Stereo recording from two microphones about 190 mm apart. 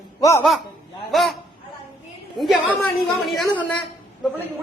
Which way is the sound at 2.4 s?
Centre (ahead or behind).